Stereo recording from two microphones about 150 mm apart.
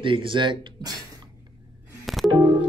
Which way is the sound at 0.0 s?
35° right (ahead or behind).